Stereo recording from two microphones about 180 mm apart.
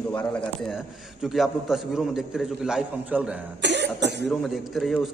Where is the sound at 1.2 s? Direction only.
Centre (ahead or behind).